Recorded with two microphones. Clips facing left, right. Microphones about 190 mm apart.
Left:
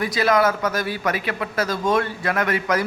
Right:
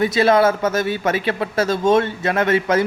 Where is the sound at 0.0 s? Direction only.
25° right (ahead or behind).